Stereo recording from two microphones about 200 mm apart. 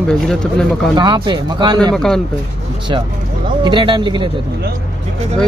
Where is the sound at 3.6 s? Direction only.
25° right (ahead or behind).